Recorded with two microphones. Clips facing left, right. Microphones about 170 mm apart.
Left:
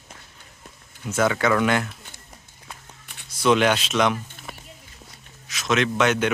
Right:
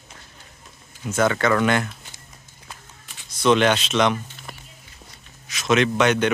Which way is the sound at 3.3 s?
10° left (ahead or behind).